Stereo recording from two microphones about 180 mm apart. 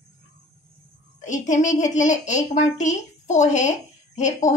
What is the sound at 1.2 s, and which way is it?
A woman's voice, 45° left (ahead or behind).